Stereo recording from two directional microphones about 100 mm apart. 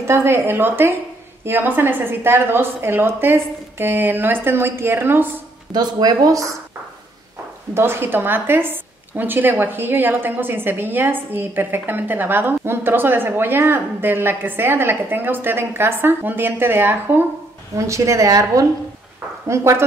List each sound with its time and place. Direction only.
0.0 s a woman's voice: 25° right (ahead or behind)
5.7 s speech: 45° right (ahead or behind)
7.7 s a woman's voice: 25° right (ahead or behind)
17.7 s a woman's voice: 30° right (ahead or behind)